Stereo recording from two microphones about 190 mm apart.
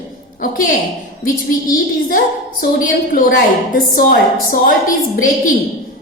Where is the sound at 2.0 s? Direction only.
50° left (ahead or behind).